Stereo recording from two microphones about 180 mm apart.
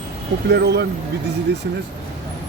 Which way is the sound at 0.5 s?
70° right (ahead or behind).